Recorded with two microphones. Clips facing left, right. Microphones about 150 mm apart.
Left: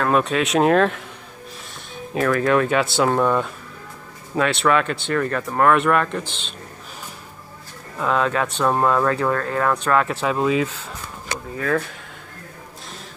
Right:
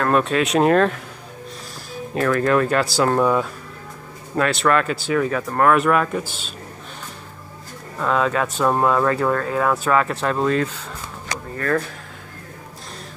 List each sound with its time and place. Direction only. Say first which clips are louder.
0.0 s speech: right 1 dB; centre (ahead or behind)
2.1 s speech: even; centre (ahead or behind)
8.0 s speech: right 1 dB; centre (ahead or behind)